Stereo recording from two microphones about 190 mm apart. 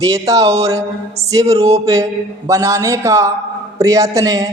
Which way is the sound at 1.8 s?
15° right (ahead or behind).